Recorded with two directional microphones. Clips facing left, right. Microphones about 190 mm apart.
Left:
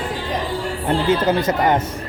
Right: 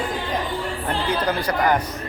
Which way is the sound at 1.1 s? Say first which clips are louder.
Left 4 dB; 25° left (ahead or behind).